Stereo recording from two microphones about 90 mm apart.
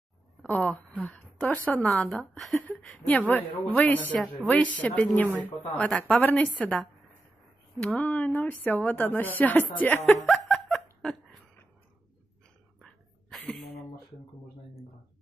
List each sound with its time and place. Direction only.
0.5 s a woman's voice: 15° left (ahead or behind)
2.3 s a woman's voice: centre (ahead or behind)
2.8 s a woman's voice: 15° left (ahead or behind)
7.8 s speech: 15° left (ahead or behind)
10.2 s snicker: centre (ahead or behind)
12.8 s a sound: 5° left (ahead or behind)